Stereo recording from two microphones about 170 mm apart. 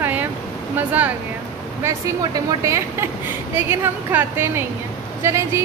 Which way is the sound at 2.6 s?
15° right (ahead or behind).